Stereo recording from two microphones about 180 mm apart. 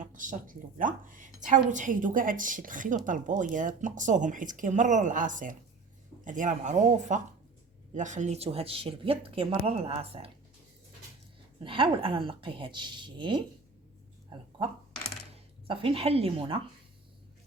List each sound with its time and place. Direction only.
0.0 s a woman's voice: 45° right (ahead or behind)
11.6 s speech: 30° right (ahead or behind)
15.6 s speech: 30° right (ahead or behind)